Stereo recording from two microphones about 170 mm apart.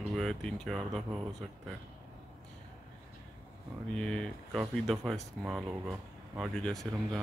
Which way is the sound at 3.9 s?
5° left (ahead or behind).